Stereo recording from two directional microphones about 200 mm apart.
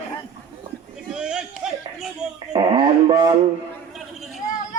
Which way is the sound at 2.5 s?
25° right (ahead or behind).